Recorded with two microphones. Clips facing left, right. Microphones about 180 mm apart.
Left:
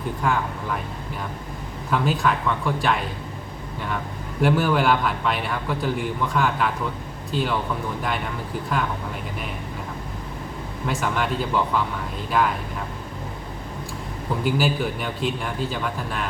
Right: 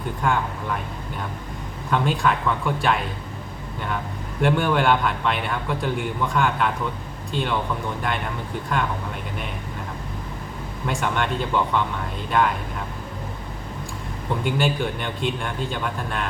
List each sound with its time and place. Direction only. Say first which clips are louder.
0.2 s a man's voice: right 1 dB; centre (ahead or behind)
1.9 s a man's voice: even; centre (ahead or behind)
4.4 s a man's voice: even; centre (ahead or behind)
10.8 s a man's voice: even; centre (ahead or behind)
14.4 s a man's voice: left 1 dB; 5° left (ahead or behind)